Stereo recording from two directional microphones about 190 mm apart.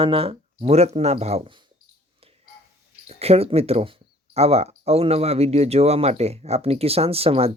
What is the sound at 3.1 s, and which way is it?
Speech, 30° right (ahead or behind).